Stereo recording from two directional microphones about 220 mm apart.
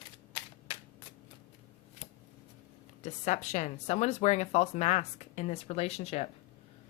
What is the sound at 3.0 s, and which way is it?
A woman's voice, 35° left (ahead or behind).